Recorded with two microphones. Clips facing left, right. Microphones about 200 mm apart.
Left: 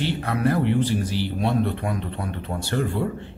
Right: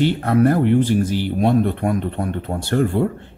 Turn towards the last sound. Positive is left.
turn(degrees=-50)  # may be behind; listen again after turning